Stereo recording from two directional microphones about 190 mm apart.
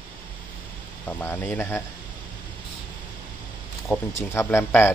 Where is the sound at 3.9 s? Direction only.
15° left (ahead or behind).